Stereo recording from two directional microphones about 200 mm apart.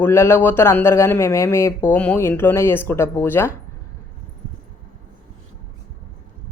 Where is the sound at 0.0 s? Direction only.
10° left (ahead or behind).